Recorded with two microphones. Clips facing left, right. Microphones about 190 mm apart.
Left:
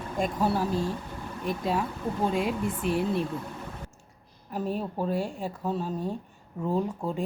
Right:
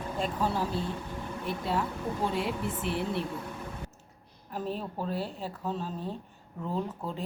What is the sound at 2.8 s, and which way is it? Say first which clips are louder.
Speech: left 5 dB; 15° left (ahead or behind).